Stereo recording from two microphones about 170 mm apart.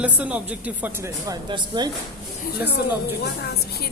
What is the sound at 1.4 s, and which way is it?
Speech, 25° right (ahead or behind).